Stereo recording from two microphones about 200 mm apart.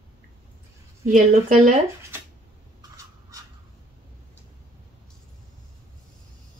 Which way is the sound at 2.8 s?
15° right (ahead or behind).